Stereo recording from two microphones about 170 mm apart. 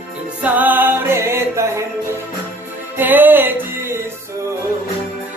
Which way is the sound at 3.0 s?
10° right (ahead or behind).